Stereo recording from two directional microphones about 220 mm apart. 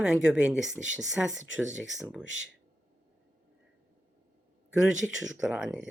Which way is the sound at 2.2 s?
60° left (ahead or behind).